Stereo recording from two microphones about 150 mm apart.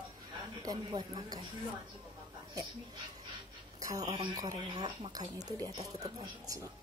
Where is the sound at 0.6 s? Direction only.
25° right (ahead or behind).